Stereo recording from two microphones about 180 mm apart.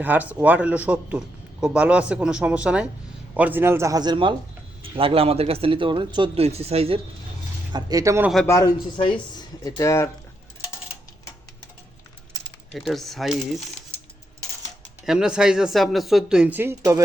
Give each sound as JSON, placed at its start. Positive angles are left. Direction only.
{"t": 0.0, "sound": "a man's voice", "side_deg": -10}
{"t": 7.7, "sound": "speech", "side_deg": -25}
{"t": 8.4, "sound": "speech", "side_deg": 20}
{"t": 12.7, "sound": "speech", "side_deg": 0}
{"t": 15.0, "sound": "speech", "side_deg": -5}